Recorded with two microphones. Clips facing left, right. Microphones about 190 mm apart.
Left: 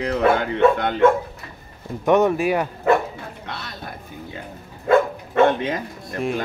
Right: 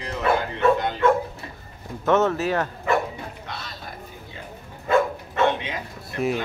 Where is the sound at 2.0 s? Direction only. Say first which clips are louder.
Left 3 dB; 15° left (ahead or behind).